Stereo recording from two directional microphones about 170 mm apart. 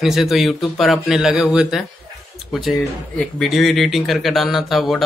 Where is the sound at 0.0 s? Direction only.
Centre (ahead or behind).